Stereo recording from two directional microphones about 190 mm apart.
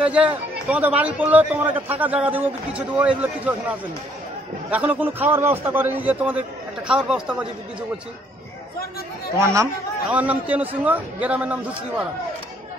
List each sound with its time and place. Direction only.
0.0 s a man's voice: 5° right (ahead or behind)
9.4 s a man's voice: 15° right (ahead or behind)